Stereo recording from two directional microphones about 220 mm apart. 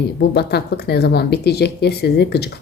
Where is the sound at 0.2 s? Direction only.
50° left (ahead or behind).